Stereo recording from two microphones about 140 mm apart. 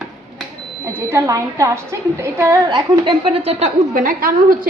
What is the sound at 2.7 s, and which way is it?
Speech, 40° right (ahead or behind).